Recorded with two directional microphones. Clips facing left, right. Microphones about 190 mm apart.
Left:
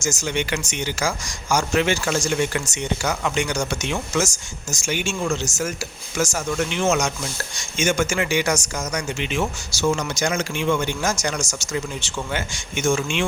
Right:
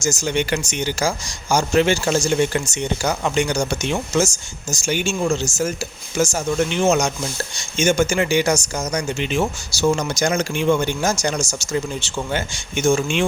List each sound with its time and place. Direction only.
0.0 s speech: 35° right (ahead or behind)